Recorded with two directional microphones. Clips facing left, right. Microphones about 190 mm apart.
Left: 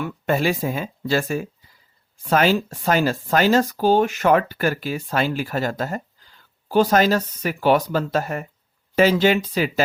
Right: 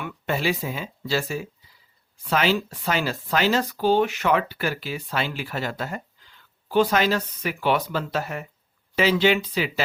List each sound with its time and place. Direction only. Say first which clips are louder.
0.0 s speech: left 5 dB; 45° left (ahead or behind)